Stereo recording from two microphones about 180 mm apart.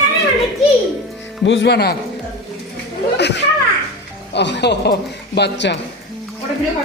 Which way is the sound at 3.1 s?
70° left (ahead or behind).